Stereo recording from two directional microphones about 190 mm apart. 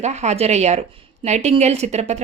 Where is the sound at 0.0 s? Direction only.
35° right (ahead or behind).